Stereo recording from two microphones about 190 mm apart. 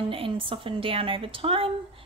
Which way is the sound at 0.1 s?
30° right (ahead or behind).